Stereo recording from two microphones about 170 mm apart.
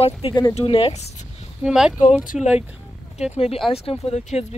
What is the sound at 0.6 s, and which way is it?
Speech, 35° left (ahead or behind).